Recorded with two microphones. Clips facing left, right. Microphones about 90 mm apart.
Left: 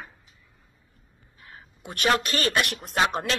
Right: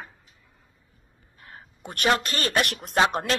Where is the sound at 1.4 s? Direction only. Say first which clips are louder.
Right 2 dB; 50° right (ahead or behind).